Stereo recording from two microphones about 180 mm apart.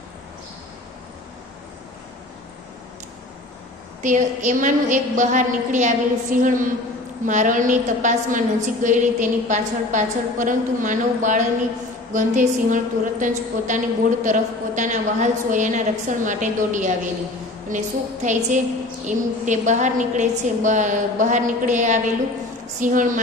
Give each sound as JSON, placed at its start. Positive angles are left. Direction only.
{"t": 4.0, "sound": "a woman's voice", "side_deg": -45}